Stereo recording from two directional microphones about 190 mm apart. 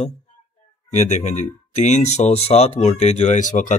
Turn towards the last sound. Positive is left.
turn(degrees=40)  # may be behind; listen again after turning